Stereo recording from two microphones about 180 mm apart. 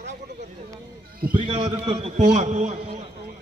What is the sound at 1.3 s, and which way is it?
A man's voice, 30° right (ahead or behind).